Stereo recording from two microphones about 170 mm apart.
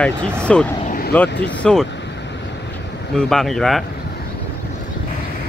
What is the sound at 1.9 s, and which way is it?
Vehicle, 90° left.